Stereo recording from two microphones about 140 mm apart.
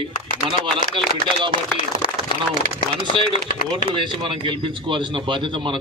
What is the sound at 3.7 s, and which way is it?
A man's voice, 35° right (ahead or behind).